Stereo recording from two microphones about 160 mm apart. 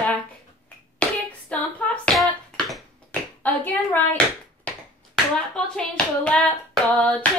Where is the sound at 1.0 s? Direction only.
5° left (ahead or behind).